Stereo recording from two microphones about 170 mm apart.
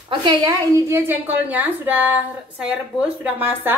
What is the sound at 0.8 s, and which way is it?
A woman's voice, 15° right (ahead or behind).